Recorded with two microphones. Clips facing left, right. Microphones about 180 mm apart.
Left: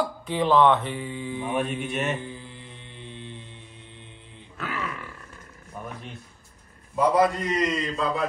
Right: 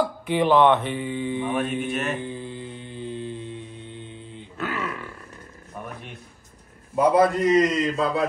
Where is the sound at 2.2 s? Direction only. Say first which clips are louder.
Right 7 dB; 25° right (ahead or behind).